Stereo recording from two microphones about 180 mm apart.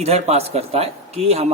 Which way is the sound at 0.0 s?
35° right (ahead or behind).